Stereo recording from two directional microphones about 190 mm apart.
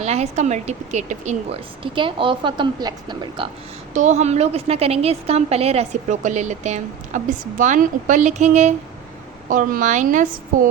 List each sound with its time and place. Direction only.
0.0 s a woman's voice: 35° right (ahead or behind)
1.8 s speech: 25° right (ahead or behind)
3.9 s a woman's voice: 40° right (ahead or behind)